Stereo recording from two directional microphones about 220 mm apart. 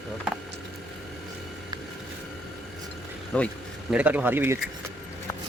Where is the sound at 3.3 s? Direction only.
5° left (ahead or behind).